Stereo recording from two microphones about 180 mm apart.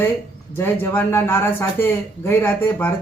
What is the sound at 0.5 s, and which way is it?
Speech, 10° left (ahead or behind).